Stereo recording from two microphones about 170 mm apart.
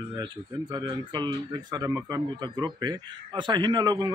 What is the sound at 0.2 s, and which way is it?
Speech, 25° right (ahead or behind).